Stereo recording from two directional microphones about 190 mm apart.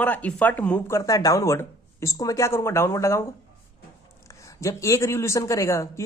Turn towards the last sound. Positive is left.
turn(degrees=15)  # may be behind; listen again after turning